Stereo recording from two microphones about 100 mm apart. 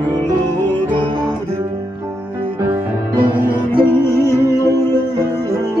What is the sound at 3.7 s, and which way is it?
Music, 25° left (ahead or behind).